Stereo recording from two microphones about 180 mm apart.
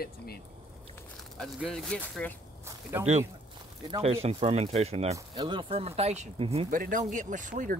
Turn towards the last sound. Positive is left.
turn(degrees=-45)  # may be behind; listen again after turning